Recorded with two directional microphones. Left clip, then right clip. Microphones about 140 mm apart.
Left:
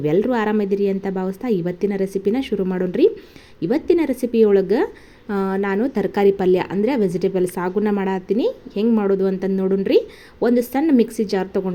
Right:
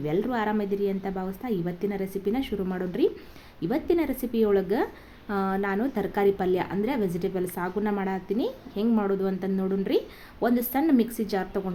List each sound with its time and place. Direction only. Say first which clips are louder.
0.0 s a woman's voice: left 8 dB; 35° left (ahead or behind)